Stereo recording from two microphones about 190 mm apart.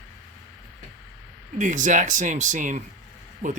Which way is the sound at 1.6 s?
40° right (ahead or behind).